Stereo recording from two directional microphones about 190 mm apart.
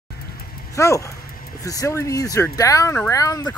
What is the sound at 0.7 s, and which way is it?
Speech, 15° left (ahead or behind).